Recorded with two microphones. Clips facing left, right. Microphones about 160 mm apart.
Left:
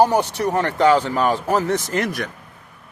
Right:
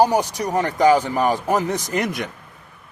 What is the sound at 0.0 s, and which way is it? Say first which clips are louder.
Speech: left 1 dB; 10° right (ahead or behind).